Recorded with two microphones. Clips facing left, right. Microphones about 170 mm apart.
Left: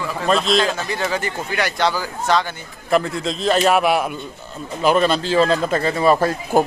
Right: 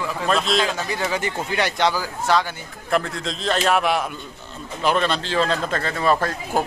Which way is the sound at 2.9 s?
5° left (ahead or behind).